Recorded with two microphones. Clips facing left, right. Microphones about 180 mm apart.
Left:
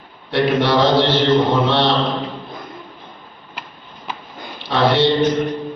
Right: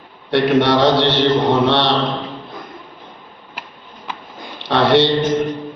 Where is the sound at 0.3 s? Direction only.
70° right (ahead or behind).